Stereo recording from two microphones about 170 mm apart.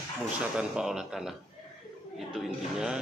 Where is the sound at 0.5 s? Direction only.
5° right (ahead or behind).